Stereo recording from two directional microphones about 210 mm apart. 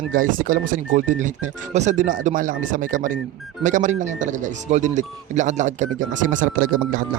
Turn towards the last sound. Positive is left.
turn(degrees=-40)  # may be behind; listen again after turning